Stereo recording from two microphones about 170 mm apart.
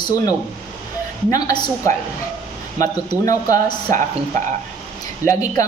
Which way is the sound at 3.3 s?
20° left (ahead or behind).